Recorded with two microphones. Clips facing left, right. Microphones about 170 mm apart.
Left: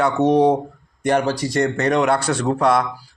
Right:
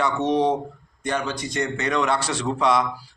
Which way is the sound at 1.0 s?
65° left (ahead or behind).